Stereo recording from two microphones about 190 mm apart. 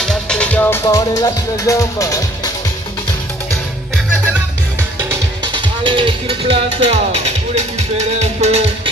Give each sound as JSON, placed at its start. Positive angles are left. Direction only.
{"t": 0.0, "sound": "speech", "side_deg": 5}
{"t": 4.1, "sound": "music", "side_deg": -5}
{"t": 5.1, "sound": "music", "side_deg": -25}